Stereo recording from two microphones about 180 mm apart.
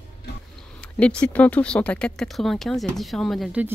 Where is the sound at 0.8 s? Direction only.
5° left (ahead or behind).